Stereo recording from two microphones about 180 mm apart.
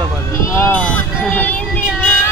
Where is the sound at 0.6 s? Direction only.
10° left (ahead or behind).